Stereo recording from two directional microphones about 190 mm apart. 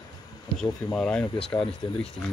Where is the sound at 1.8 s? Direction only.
30° left (ahead or behind).